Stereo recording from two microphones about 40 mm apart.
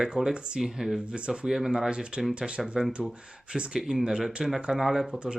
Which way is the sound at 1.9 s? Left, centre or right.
Right.